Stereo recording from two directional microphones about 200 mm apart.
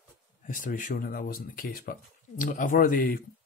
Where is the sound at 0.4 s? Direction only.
40° left (ahead or behind).